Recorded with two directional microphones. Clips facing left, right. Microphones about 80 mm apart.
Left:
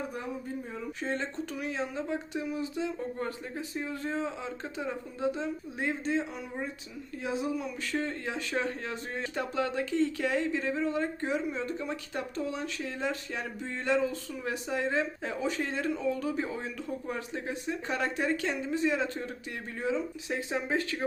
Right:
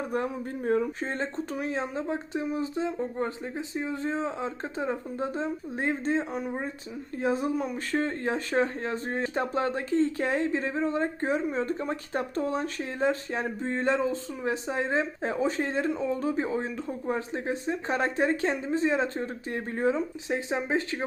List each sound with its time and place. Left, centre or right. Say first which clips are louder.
0.1 s speech: right 6 dB; right
0.9 s speech: right 2 dB; right
20.3 s speech: right 3 dB; right